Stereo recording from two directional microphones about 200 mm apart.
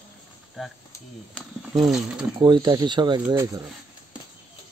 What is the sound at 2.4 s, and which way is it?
Speech, 20° right (ahead or behind).